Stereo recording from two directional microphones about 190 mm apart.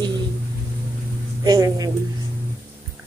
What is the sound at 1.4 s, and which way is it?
Speech, 20° right (ahead or behind).